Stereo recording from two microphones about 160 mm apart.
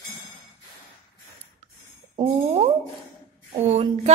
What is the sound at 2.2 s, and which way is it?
A woman's voice, 45° right (ahead or behind).